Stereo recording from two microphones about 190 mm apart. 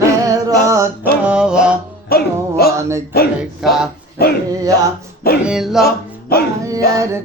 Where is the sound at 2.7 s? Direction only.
15° right (ahead or behind).